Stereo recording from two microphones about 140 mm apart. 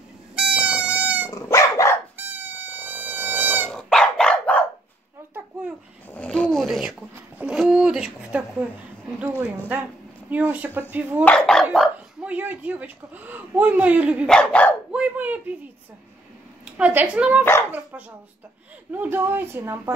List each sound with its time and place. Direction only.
0.4 s goat: 10° right (ahead or behind)
1.3 s dog: 20° left (ahead or behind)
2.1 s goat: 15° right (ahead or behind)
3.7 s dog: 5° left (ahead or behind)
6.0 s a sound: 10° left (ahead or behind); by 8.6 s 10° right (ahead or behind)
10.3 s speech: 10° right (ahead or behind)
11.2 s speech: 5° left (ahead or behind)
14.2 s dog: 5° left (ahead or behind)
14.9 s a sound: 10° right (ahead or behind)
16.6 s speech: 10° right (ahead or behind)
18.9 s speech: 15° right (ahead or behind)